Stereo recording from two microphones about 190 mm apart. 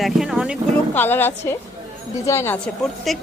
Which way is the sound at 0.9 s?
10° left (ahead or behind).